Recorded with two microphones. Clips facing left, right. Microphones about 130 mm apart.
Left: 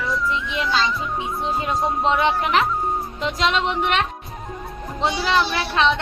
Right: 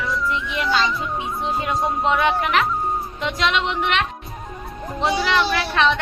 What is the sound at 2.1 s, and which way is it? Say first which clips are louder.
Speech: even; 25° left (ahead or behind).